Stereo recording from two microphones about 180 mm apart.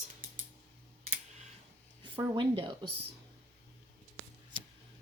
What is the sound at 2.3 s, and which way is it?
Speech, 30° right (ahead or behind).